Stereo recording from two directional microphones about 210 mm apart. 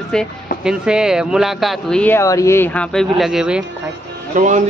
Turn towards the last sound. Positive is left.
turn(degrees=-35)  # may be behind; listen again after turning